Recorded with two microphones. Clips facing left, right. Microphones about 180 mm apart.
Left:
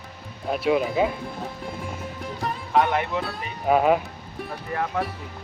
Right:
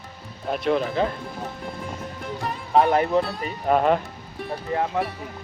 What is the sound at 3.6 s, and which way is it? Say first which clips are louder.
Speech: left 1 dB; 5° left (ahead or behind).